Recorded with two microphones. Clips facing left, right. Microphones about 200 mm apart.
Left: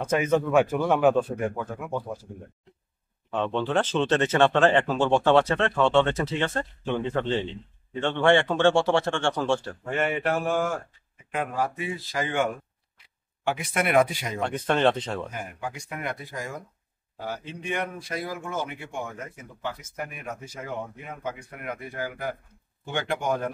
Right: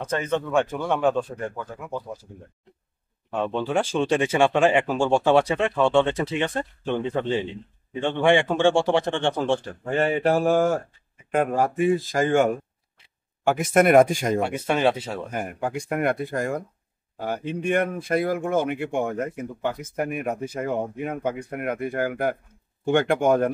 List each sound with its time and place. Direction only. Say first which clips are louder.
0.0 s speech: left 2 dB; 10° left (ahead or behind)
3.3 s speech: right 1 dB; 10° right (ahead or behind)
9.8 s speech: right 5 dB; 30° right (ahead or behind)
11.3 s speech: right 7 dB; 50° right (ahead or behind)
14.4 s speech: left 3 dB; 10° right (ahead or behind)
15.3 s speech: right 7 dB; 55° right (ahead or behind)